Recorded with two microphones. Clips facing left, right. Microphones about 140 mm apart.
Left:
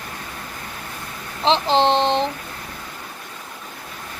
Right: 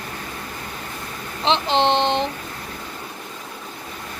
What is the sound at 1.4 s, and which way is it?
Speech, 35° left (ahead or behind).